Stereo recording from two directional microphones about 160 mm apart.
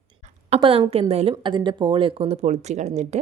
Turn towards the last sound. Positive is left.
turn(degrees=-45)  # may be behind; listen again after turning